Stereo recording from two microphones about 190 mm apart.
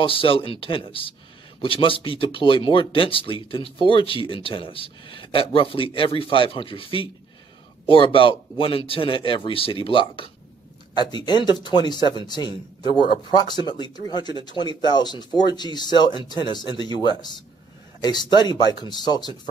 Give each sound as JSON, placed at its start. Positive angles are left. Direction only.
{"t": 0.0, "sound": "speech", "side_deg": 30}